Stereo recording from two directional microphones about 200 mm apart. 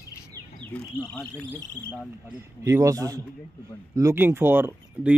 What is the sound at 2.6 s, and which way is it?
Speech, 15° right (ahead or behind).